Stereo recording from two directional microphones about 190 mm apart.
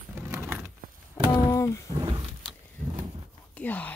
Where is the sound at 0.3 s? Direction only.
10° right (ahead or behind).